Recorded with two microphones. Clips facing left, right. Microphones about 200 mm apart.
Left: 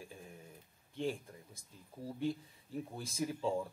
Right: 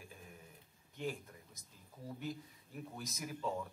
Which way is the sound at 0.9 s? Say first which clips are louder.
Left 4 dB; 30° left (ahead or behind).